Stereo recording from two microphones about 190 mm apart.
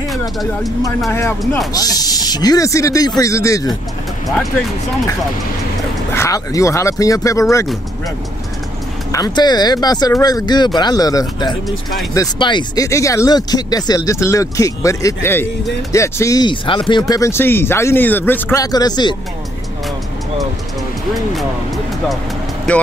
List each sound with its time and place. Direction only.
1.4 s speech: centre (ahead or behind)
1.7 s speech: 20° left (ahead or behind)
6.1 s speech: 15° left (ahead or behind)
9.1 s speech: 20° left (ahead or behind)
22.7 s speech: 5° left (ahead or behind)